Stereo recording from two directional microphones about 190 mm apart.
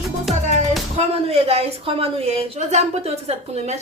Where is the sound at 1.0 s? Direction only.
30° right (ahead or behind).